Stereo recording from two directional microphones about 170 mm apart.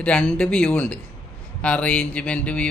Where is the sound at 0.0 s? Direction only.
5° left (ahead or behind).